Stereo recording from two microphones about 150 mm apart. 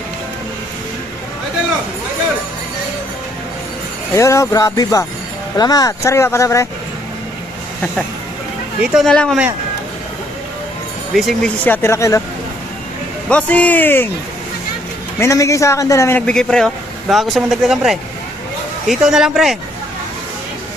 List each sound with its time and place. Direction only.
4.1 s speech: 20° left (ahead or behind)
8.8 s speech: 5° right (ahead or behind)
11.1 s speech: centre (ahead or behind)
11.6 s a man's voice: 15° left (ahead or behind)
13.2 s a man's voice: 10° left (ahead or behind)
15.2 s speech: 20° left (ahead or behind); by 19.5 s 5° right (ahead or behind)